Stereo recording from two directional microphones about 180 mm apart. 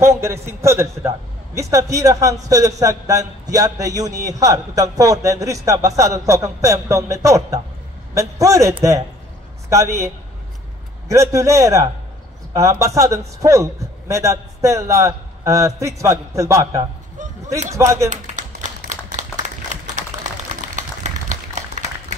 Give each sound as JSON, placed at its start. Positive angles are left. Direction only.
{"t": 0.0, "sound": "a man's voice", "side_deg": -15}
{"t": 11.1, "sound": "a man's voice", "side_deg": -15}
{"t": 18.1, "sound": "clapping", "side_deg": -40}
{"t": 20.1, "sound": "a sound", "side_deg": -40}